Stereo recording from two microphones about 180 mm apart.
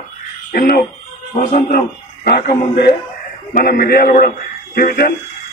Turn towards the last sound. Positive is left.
turn(degrees=60)  # may be behind; listen again after turning